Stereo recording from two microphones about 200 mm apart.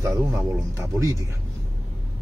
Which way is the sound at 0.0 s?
15° right (ahead or behind).